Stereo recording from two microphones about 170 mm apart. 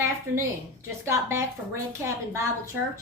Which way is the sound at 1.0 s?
15° right (ahead or behind).